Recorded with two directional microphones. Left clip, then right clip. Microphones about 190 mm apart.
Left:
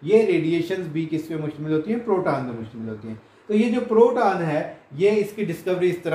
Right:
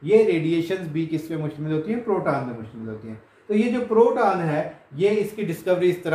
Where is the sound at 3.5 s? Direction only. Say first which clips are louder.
Left 1 dB; 10° right (ahead or behind).